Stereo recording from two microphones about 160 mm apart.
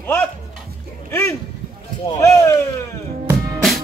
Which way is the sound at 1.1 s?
15° left (ahead or behind).